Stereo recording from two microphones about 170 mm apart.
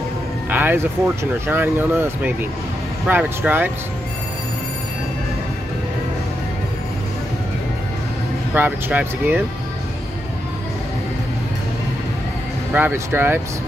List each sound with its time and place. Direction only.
0.5 s speech: 10° right (ahead or behind)
8.5 s speech: 10° right (ahead or behind)
12.7 s speech: 10° right (ahead or behind)